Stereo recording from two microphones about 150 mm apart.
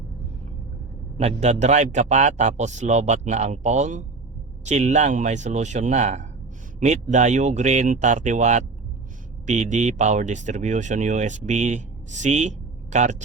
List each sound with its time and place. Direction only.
1.2 s speech: 45° right (ahead or behind)